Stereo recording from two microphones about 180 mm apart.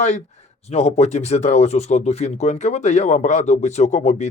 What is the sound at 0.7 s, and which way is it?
Speech, 35° left (ahead or behind).